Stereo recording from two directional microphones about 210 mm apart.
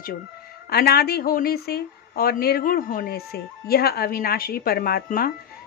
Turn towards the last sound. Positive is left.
turn(degrees=45)  # may be behind; listen again after turning